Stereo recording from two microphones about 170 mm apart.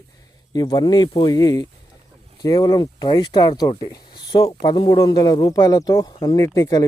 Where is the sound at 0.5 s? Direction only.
25° left (ahead or behind).